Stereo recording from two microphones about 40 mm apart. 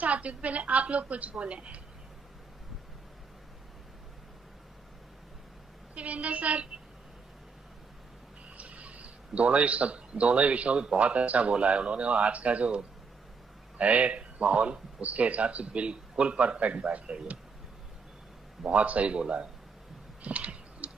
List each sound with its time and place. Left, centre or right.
0.0 s speech: right
5.9 s speech: right
8.5 s speech: right
18.7 s speech: right
20.2 s a sound: right